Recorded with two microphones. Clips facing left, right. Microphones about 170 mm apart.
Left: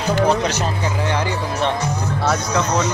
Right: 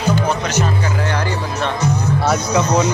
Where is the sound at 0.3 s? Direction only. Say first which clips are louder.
Even; 30° left (ahead or behind).